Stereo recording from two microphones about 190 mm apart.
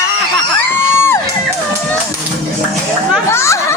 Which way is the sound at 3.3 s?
15° left (ahead or behind).